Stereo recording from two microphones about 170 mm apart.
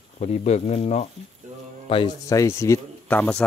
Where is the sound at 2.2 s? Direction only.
20° left (ahead or behind).